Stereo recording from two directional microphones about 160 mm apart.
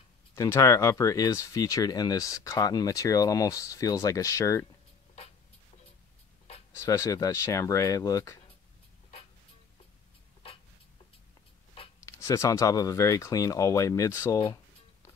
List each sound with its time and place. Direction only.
0.4 s speech: 20° left (ahead or behind)
6.7 s speech: 20° left (ahead or behind)
12.0 s speech: 20° left (ahead or behind)